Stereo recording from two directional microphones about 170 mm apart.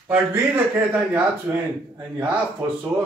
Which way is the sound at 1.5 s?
10° right (ahead or behind).